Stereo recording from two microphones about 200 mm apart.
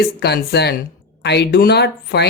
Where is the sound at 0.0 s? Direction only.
55° left (ahead or behind).